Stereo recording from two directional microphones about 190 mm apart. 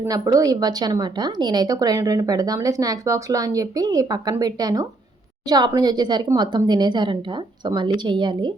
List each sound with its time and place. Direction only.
0.0 s a woman's voice: 20° right (ahead or behind)